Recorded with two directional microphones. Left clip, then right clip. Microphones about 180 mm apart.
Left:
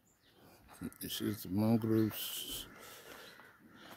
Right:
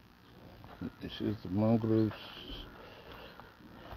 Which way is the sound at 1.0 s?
20° left (ahead or behind).